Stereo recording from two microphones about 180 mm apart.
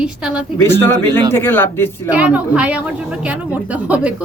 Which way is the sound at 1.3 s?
10° left (ahead or behind).